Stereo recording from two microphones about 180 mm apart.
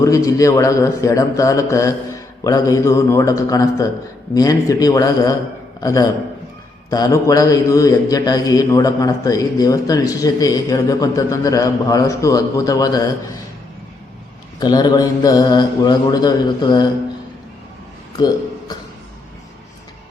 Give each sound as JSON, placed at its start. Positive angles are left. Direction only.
{"t": 0.0, "sound": "a man's voice", "side_deg": 15}
{"t": 14.6, "sound": "a man's voice", "side_deg": 20}